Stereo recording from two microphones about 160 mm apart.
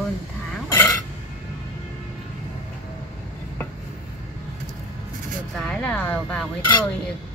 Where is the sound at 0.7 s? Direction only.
15° left (ahead or behind).